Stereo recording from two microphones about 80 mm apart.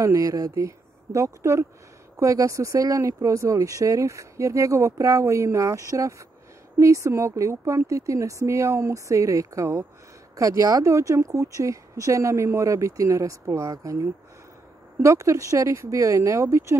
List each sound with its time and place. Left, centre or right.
0.0 s speech: right